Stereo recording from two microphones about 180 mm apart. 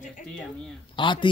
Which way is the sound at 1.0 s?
25° left (ahead or behind).